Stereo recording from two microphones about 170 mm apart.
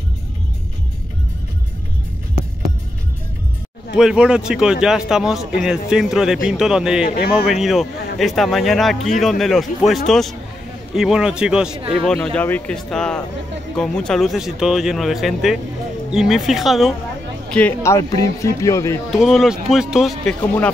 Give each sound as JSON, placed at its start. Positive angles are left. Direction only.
{"t": 3.9, "sound": "speech", "side_deg": -5}
{"t": 19.1, "sound": "speech", "side_deg": 0}